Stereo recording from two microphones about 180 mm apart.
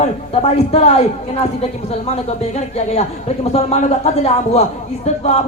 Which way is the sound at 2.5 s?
35° left (ahead or behind).